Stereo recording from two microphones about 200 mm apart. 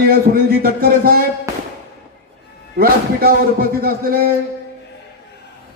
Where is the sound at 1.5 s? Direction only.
15° right (ahead or behind).